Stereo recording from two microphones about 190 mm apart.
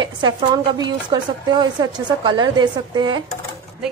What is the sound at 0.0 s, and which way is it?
A woman's voice, 25° right (ahead or behind).